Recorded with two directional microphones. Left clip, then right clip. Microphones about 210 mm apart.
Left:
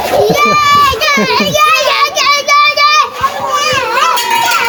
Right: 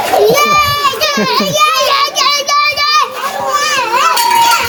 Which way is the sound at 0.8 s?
10° left (ahead or behind).